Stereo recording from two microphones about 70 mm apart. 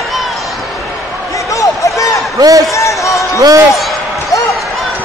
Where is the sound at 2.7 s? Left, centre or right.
Left.